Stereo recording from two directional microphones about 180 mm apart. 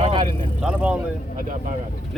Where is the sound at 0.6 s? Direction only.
5° right (ahead or behind).